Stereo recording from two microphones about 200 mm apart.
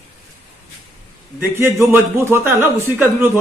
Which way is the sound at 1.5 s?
10° right (ahead or behind).